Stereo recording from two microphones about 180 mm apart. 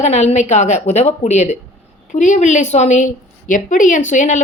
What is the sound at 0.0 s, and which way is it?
A woman's voice, 40° left (ahead or behind).